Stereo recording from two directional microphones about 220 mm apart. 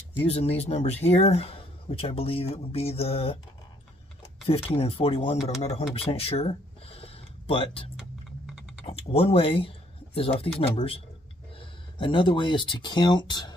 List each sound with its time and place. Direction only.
0.2 s speech: 30° left (ahead or behind)
4.6 s speech: 25° left (ahead or behind)
5.9 s a sound: 25° left (ahead or behind)
8.8 s speech: 25° left (ahead or behind)
12.0 s speech: 20° left (ahead or behind)